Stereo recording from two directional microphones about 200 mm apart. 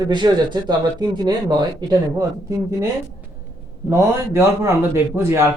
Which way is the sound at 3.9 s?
15° right (ahead or behind).